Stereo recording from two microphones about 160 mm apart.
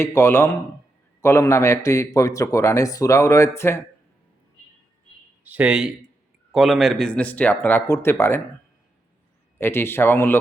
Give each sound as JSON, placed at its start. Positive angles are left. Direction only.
{"t": 0.0, "sound": "a man's voice", "side_deg": 15}
{"t": 5.4, "sound": "a man's voice", "side_deg": -10}
{"t": 9.6, "sound": "a man's voice", "side_deg": 15}